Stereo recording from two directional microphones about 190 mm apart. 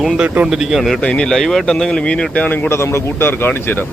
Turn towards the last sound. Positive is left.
turn(degrees=10)  # may be behind; listen again after turning